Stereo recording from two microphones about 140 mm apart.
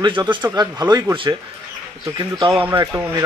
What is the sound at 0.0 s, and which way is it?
Speech, 35° right (ahead or behind).